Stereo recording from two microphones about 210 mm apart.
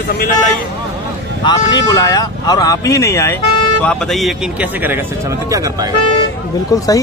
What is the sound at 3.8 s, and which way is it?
Speech, 5° left (ahead or behind).